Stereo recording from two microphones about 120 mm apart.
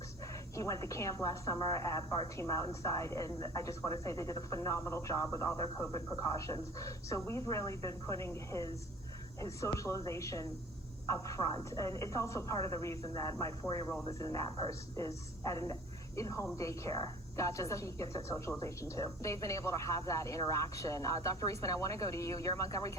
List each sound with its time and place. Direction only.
0.5 s a woman's voice: 25° left (ahead or behind)